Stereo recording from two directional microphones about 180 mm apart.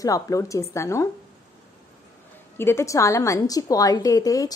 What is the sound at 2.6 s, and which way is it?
A woman's voice, 15° left (ahead or behind).